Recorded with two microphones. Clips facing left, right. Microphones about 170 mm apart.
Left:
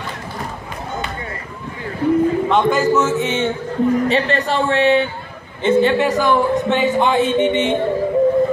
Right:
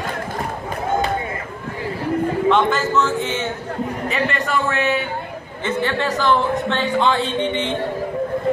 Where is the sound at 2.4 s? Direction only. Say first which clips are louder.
Left 2 dB; 10° left (ahead or behind).